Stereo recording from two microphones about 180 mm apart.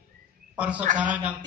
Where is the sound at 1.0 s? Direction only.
10° right (ahead or behind).